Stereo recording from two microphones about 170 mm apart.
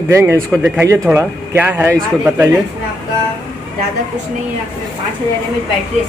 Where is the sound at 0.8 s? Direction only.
15° right (ahead or behind).